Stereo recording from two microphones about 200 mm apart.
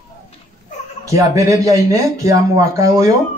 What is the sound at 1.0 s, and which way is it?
Speech, 15° right (ahead or behind).